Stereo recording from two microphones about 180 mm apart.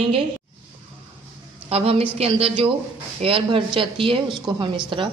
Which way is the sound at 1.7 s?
35° right (ahead or behind).